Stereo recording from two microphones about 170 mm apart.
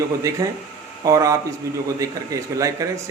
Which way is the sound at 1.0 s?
20° right (ahead or behind).